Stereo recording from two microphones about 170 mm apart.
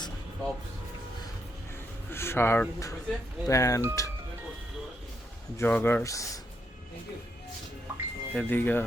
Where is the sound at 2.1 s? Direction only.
15° left (ahead or behind).